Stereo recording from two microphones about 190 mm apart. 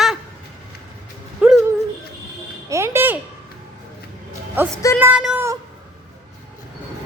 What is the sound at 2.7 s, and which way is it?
Speech, 15° right (ahead or behind).